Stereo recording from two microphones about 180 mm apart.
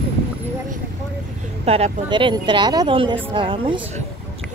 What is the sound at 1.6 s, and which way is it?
Speech, 35° right (ahead or behind).